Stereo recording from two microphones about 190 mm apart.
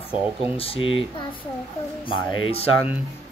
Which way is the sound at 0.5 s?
30° left (ahead or behind).